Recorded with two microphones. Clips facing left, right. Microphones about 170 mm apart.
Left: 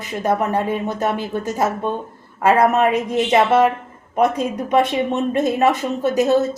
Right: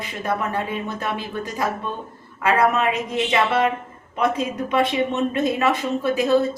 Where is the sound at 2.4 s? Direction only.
45° left (ahead or behind).